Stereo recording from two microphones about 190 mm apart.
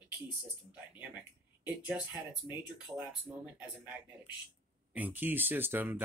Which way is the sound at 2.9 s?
5° left (ahead or behind).